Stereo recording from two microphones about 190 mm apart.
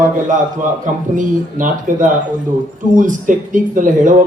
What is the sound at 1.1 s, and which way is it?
A man's voice, 45° right (ahead or behind).